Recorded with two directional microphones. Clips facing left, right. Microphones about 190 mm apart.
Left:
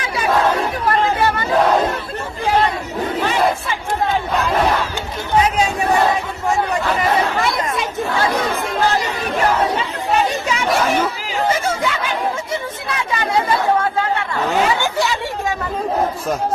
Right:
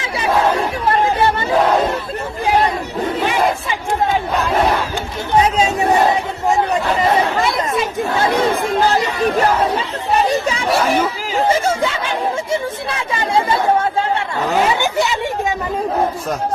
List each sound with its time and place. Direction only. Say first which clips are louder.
0.9 s chatter: right 2 dB; 25° right (ahead or behind)
3.2 s battle cry: even; 15° right (ahead or behind)
5.5 s crowd: right 2 dB; 25° right (ahead or behind)
8.2 s battle cry: right 5 dB; 30° right (ahead or behind)
10.2 s a sound: right 3 dB; 35° right (ahead or behind)
11.8 s chatter: right 1 dB; 30° right (ahead or behind)
14.7 s chatter: right 2 dB; 20° right (ahead or behind)